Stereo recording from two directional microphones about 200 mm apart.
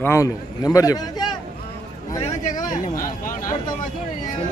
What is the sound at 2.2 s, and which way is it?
Speech, 35° left (ahead or behind).